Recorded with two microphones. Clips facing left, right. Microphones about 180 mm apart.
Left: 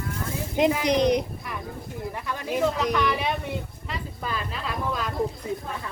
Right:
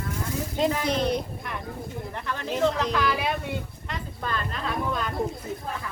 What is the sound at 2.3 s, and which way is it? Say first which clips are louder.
Speech: even; 10° left (ahead or behind).